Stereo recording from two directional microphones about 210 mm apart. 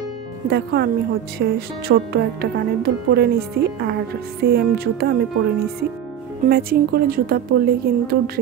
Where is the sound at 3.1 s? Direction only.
50° right (ahead or behind).